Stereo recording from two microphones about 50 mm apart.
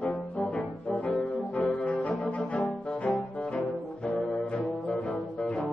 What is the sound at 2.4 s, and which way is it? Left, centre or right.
Music, centre.